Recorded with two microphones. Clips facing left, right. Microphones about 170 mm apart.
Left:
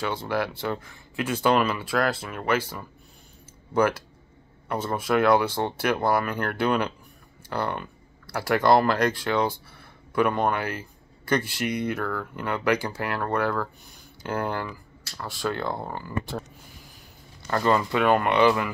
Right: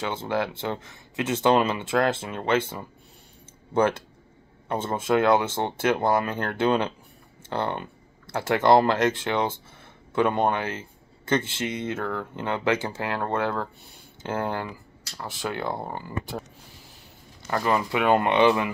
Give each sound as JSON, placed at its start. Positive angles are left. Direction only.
{"t": 0.0, "sound": "speech", "side_deg": -20}
{"t": 17.5, "sound": "speech", "side_deg": -10}